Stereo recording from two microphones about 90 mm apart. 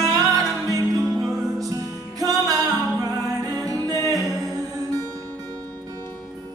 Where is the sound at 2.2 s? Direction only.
40° right (ahead or behind).